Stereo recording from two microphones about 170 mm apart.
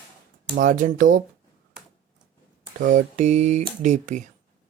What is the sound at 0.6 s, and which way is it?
Speech, 50° right (ahead or behind).